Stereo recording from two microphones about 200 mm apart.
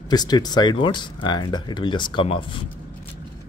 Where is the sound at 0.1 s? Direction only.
20° left (ahead or behind).